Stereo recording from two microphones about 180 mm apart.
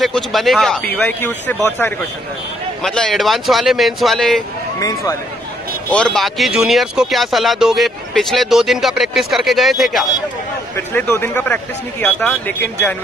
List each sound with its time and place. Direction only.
0.0 s speech: centre (ahead or behind)
4.7 s speech: 15° left (ahead or behind)
5.9 s speech: 5° left (ahead or behind)
10.9 s speech: 10° left (ahead or behind)